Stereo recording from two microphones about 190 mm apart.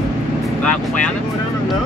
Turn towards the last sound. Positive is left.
turn(degrees=5)  # may be behind; listen again after turning